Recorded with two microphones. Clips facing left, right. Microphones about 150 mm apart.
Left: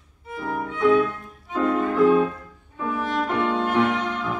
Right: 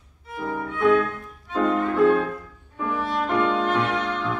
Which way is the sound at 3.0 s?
15° left (ahead or behind).